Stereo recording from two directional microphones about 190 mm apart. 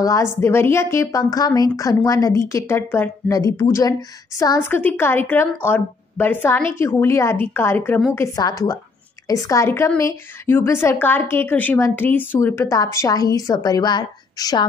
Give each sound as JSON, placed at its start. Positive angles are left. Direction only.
{"t": 0.0, "sound": "a woman's voice", "side_deg": 15}